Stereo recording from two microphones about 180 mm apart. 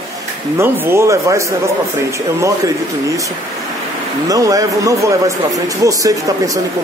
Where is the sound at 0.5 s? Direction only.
15° right (ahead or behind).